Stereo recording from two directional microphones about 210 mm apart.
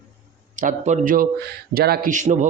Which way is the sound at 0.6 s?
40° right (ahead or behind).